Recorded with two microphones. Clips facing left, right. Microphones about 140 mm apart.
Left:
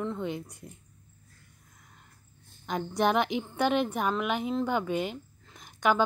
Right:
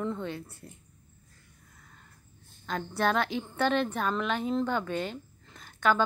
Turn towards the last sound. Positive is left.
turn(degrees=15)  # may be behind; listen again after turning